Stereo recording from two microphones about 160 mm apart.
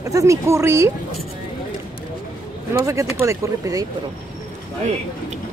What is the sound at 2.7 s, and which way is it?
Speech, 20° right (ahead or behind).